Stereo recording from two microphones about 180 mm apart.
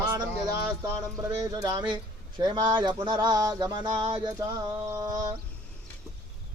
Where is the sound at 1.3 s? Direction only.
20° right (ahead or behind).